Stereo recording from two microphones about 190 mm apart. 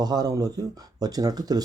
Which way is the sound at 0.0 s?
20° right (ahead or behind).